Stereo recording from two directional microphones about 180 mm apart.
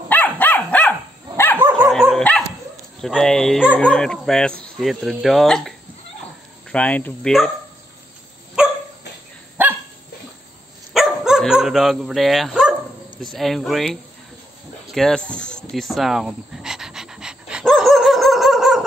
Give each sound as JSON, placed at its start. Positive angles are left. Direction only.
{"t": 0.1, "sound": "dog", "side_deg": 10}
{"t": 1.8, "sound": "dog", "side_deg": 0}
{"t": 3.0, "sound": "speech", "side_deg": 0}
{"t": 10.9, "sound": "dog", "side_deg": 0}
{"t": 13.2, "sound": "speech", "side_deg": 0}
{"t": 14.9, "sound": "a sound", "side_deg": 0}